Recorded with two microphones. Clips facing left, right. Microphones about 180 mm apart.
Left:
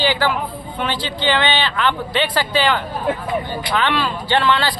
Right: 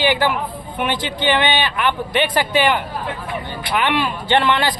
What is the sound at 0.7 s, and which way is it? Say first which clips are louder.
A man's voice: right 2 dB; 15° right (ahead or behind).